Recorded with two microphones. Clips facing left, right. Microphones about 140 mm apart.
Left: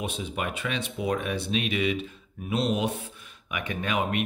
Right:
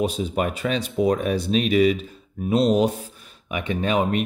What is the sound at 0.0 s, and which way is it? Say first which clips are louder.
Speech: right 8 dB; 35° right (ahead or behind).